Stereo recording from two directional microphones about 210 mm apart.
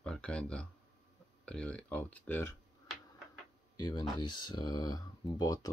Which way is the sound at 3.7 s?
20° left (ahead or behind).